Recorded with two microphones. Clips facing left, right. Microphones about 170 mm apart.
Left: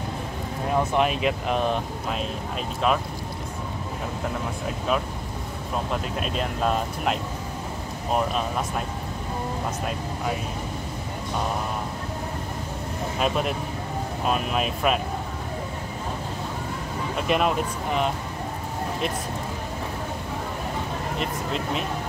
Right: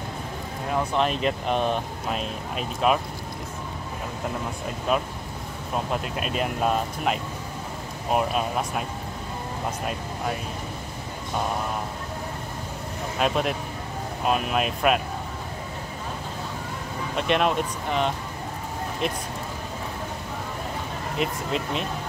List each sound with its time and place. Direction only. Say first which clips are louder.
0.9 s speech: left 1 dB; 5° left (ahead or behind)
6.1 s speech: even; 5° right (ahead or behind)
13.2 s speech: right 1 dB; centre (ahead or behind)
17.3 s speech: even; centre (ahead or behind)
21.2 s speech: right 4 dB; centre (ahead or behind)